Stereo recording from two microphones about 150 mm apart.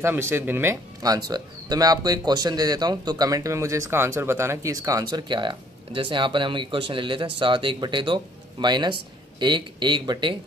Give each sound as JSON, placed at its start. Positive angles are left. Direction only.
{"t": 0.0, "sound": "speech", "side_deg": -15}
{"t": 1.0, "sound": "speech", "side_deg": -25}